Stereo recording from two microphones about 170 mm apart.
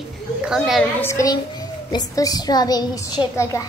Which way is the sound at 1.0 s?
20° left (ahead or behind).